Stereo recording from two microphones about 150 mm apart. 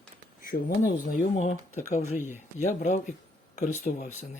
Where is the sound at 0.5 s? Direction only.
90° left.